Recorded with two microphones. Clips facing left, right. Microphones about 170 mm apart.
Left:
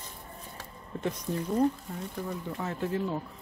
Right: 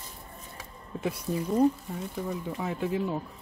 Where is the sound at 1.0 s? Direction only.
10° right (ahead or behind).